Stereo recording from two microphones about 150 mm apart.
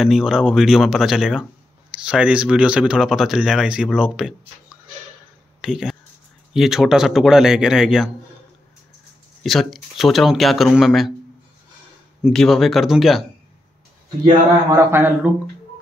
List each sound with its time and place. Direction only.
0.0 s speech: centre (ahead or behind)
5.6 s speech: 5° right (ahead or behind)
9.4 s speech: centre (ahead or behind)
12.2 s speech: centre (ahead or behind)
14.7 s a man's voice: 15° right (ahead or behind)